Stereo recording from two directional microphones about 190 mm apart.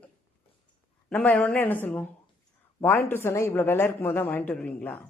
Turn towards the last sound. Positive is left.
turn(degrees=10)  # may be behind; listen again after turning